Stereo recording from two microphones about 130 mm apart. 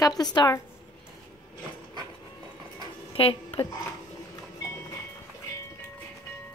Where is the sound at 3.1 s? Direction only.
45° left (ahead or behind).